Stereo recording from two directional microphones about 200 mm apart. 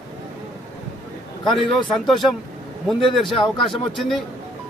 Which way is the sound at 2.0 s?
Centre (ahead or behind).